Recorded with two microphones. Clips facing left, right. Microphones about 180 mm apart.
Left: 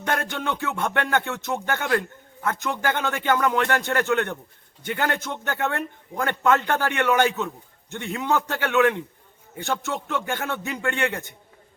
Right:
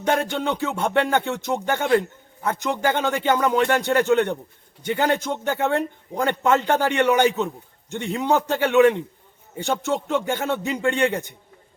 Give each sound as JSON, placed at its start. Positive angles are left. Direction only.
{"t": 0.0, "sound": "music", "side_deg": -15}